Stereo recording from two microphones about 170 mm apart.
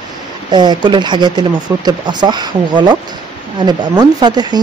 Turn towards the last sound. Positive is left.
turn(degrees=-25)  # may be behind; listen again after turning